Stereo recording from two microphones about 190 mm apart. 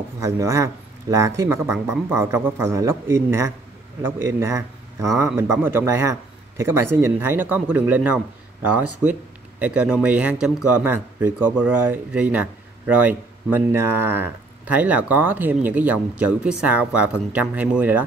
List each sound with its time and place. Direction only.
0.2 s a man's voice: 15° right (ahead or behind)